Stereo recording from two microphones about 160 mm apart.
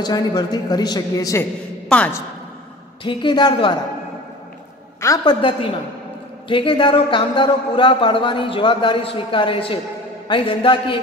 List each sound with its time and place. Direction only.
0.0 s speech: 25° left (ahead or behind)
1.9 s a woman's voice: 10° left (ahead or behind)
3.0 s a man's voice: 30° left (ahead or behind)
5.0 s a man's voice: 25° left (ahead or behind)